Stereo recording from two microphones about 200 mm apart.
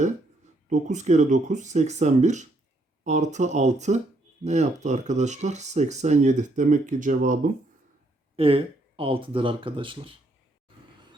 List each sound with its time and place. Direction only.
0.7 s speech: 35° right (ahead or behind)
8.4 s speech: 25° right (ahead or behind)